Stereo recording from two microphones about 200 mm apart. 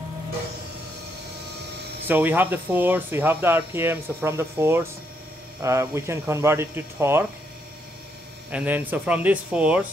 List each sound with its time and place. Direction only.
2.0 s speech: 10° right (ahead or behind)
8.5 s speech: 10° right (ahead or behind)